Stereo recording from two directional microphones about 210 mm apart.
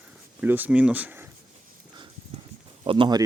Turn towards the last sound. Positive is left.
turn(degrees=-20)  # may be behind; listen again after turning